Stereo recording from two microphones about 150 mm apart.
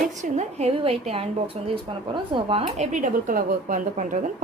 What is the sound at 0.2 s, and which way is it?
A woman's voice, 50° right (ahead or behind).